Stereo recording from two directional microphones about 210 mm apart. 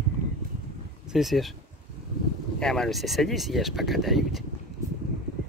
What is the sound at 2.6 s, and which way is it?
Speech, centre (ahead or behind).